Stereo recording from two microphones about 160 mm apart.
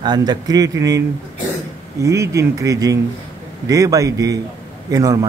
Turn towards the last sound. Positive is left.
turn(degrees=-20)  # may be behind; listen again after turning